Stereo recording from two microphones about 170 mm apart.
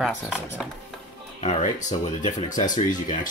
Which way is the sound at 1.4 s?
45° left (ahead or behind).